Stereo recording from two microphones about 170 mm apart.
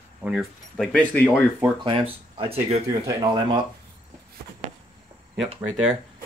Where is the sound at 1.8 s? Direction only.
30° right (ahead or behind).